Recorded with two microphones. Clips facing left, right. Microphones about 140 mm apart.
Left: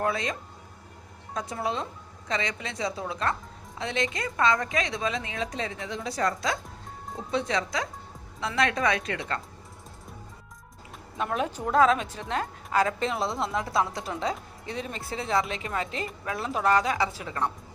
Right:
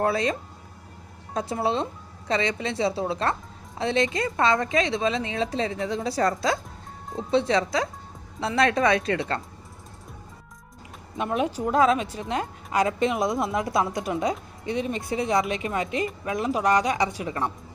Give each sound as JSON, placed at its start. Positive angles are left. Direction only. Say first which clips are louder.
{"t": 0.0, "sound": "a woman's voice", "louder": "right 5 dB", "side_deg": -35}
{"t": 11.2, "sound": "a woman's voice", "louder": "right 4 dB", "side_deg": -10}